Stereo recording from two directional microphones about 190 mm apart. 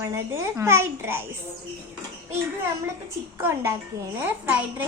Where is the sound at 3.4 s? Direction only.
15° right (ahead or behind).